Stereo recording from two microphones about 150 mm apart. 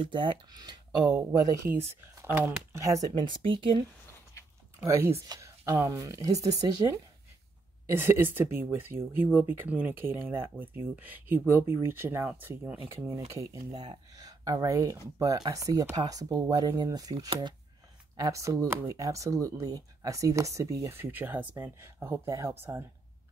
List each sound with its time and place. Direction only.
0.0 s speech: 35° right (ahead or behind)
1.9 s speech: 15° right (ahead or behind); by 3.8 s 35° right (ahead or behind)
4.7 s speech: 20° right (ahead or behind)
13.3 s speech: 25° right (ahead or behind)